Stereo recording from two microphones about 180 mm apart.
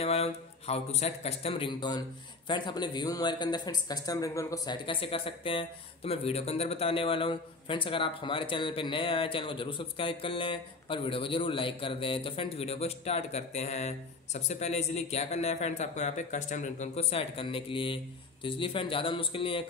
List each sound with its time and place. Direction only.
0.0 s speech: 35° left (ahead or behind)